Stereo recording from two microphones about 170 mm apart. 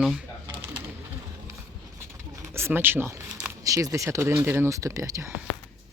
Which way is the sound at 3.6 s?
20° right (ahead or behind).